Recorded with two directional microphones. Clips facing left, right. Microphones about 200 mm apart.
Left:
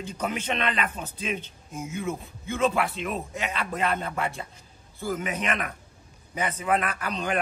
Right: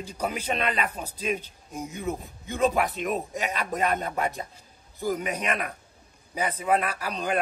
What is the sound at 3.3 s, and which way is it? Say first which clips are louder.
Speech: right 2 dB; 40° right (ahead or behind).